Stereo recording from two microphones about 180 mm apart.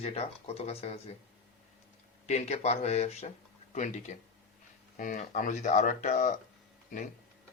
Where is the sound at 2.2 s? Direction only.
40° left (ahead or behind).